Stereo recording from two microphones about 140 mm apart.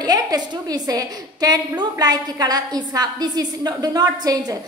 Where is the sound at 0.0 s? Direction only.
25° right (ahead or behind).